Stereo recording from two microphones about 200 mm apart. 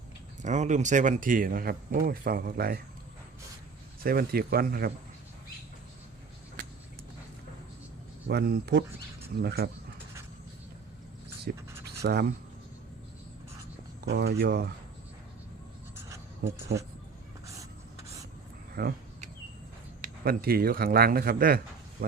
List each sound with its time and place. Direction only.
0.4 s speech: 35° right (ahead or behind)
4.0 s speech: 50° right (ahead or behind)
8.3 s speech: 55° right (ahead or behind)
11.5 s speech: 50° right (ahead or behind)
11.9 s writing: 55° right (ahead or behind)
14.0 s speech: 55° right (ahead or behind)
16.0 s a sound: 15° right (ahead or behind)
16.4 s speech: 45° right (ahead or behind)
18.7 s speech: 50° right (ahead or behind)
20.0 s speech: 50° right (ahead or behind)